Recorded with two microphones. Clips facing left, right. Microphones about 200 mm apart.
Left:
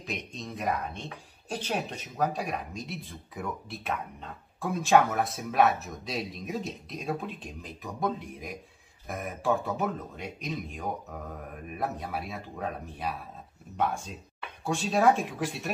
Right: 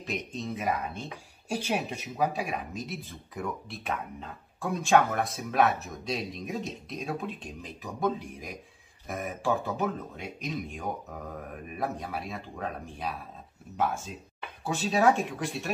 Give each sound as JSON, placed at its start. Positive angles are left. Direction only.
{"t": 0.0, "sound": "speech", "side_deg": 0}